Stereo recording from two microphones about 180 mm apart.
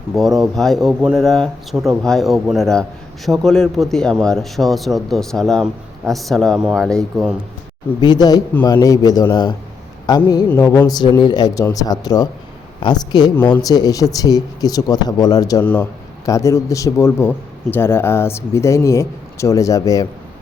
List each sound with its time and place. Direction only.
0.1 s speech: centre (ahead or behind)
8.0 s speech: 20° left (ahead or behind)
15.6 s a man's voice: 5° left (ahead or behind)